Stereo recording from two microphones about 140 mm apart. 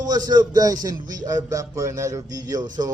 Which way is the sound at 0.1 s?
30° right (ahead or behind).